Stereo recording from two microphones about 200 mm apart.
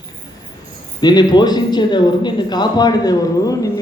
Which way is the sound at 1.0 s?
20° left (ahead or behind).